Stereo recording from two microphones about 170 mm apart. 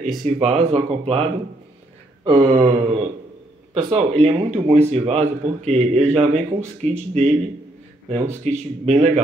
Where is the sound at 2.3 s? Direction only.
40° right (ahead or behind).